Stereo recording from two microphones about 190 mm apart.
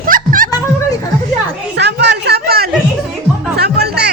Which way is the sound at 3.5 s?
60° right (ahead or behind).